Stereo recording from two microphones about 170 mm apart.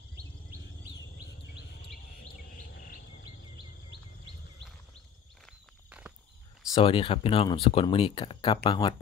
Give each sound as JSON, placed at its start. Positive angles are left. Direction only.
{"t": 0.9, "sound": "chirp", "side_deg": 80}
{"t": 2.5, "sound": "bird", "side_deg": 55}
{"t": 5.9, "sound": "walk", "side_deg": -5}
{"t": 6.7, "sound": "speech", "side_deg": 30}